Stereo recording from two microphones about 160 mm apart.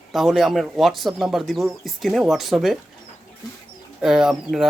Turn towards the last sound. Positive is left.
turn(degrees=-5)  # may be behind; listen again after turning